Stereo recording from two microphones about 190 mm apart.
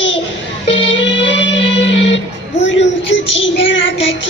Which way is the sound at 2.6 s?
80° left.